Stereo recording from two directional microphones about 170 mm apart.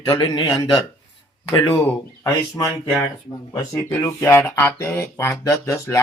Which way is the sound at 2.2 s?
20° left (ahead or behind).